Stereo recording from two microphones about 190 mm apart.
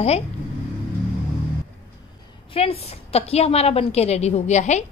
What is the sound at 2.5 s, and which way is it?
A woman's voice, 30° left (ahead or behind).